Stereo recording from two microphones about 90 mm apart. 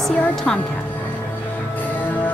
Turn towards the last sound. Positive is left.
turn(degrees=5)  # may be behind; listen again after turning